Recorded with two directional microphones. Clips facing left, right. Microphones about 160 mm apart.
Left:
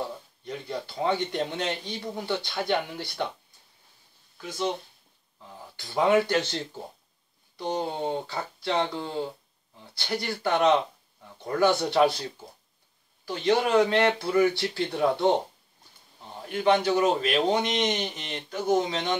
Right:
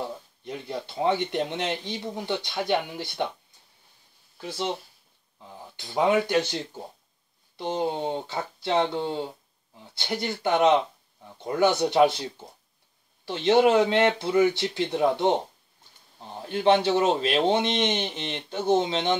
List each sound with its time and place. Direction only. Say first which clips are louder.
0.5 s a man's voice: even; 20° right (ahead or behind)
4.4 s a man's voice: even; 30° right (ahead or behind)
5.8 s a man's voice: even; 20° right (ahead or behind)
16.4 s a man's voice: right 2 dB; 30° right (ahead or behind)